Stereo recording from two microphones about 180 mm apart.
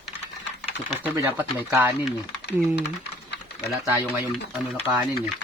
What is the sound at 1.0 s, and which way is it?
Speech, 10° right (ahead or behind).